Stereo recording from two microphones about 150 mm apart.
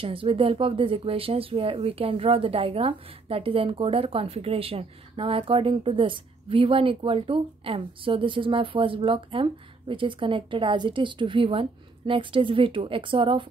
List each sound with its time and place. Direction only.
0.0 s speech: 40° right (ahead or behind)